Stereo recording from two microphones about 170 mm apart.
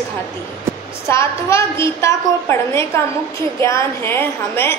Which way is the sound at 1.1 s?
15° left (ahead or behind).